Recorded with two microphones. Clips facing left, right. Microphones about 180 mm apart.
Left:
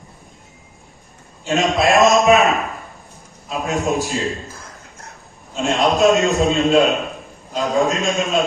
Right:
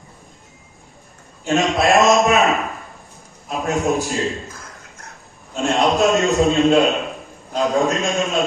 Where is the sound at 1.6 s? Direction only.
Centre (ahead or behind).